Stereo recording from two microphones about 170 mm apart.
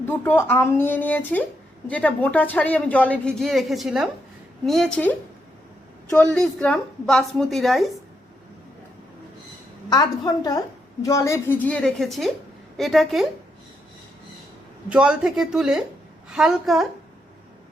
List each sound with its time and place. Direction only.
0.0 s a woman's voice: 15° left (ahead or behind)
9.9 s a woman's voice: 25° left (ahead or behind); by 13.2 s centre (ahead or behind)
14.8 s a woman's voice: 5° right (ahead or behind)